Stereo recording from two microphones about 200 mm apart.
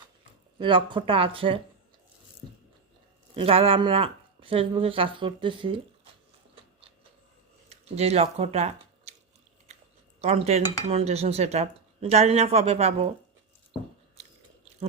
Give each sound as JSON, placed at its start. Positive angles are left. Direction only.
{"t": 0.6, "sound": "speech", "side_deg": -25}
{"t": 3.3, "sound": "speech", "side_deg": -30}
{"t": 7.7, "sound": "speech", "side_deg": -30}
{"t": 10.2, "sound": "cutlery", "side_deg": -30}
{"t": 10.8, "sound": "speech", "side_deg": -30}